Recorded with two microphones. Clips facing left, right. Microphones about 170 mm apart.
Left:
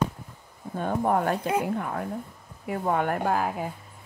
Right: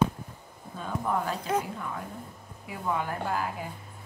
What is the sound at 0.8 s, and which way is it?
Speech, 55° left (ahead or behind).